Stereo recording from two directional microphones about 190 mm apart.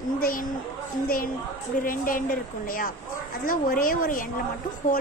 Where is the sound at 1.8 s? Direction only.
45° left (ahead or behind).